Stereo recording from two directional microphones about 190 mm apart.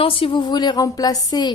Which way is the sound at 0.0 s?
30° left (ahead or behind).